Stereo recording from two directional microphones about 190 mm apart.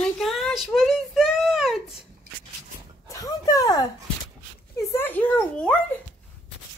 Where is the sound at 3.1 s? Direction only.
20° left (ahead or behind).